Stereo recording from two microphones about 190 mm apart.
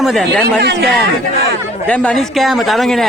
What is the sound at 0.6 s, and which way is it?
Speech, 60° right (ahead or behind).